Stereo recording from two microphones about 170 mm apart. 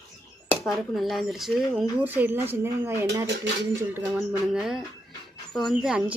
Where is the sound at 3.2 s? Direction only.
90° right.